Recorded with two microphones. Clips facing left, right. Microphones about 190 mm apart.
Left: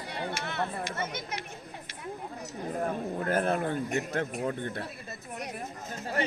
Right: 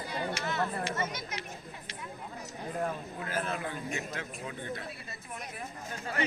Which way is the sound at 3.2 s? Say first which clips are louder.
Left 8 dB; 55° left (ahead or behind).